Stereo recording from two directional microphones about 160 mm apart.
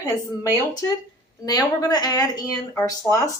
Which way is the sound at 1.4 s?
25° left (ahead or behind).